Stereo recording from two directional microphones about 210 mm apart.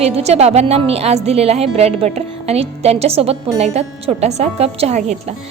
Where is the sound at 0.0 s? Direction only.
30° right (ahead or behind).